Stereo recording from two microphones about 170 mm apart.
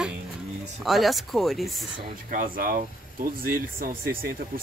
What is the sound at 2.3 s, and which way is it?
Speech, 55° right (ahead or behind).